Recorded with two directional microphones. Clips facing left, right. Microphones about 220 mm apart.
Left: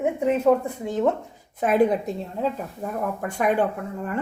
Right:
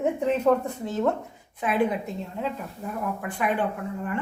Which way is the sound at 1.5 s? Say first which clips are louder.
Left 5 dB; 45° left (ahead or behind).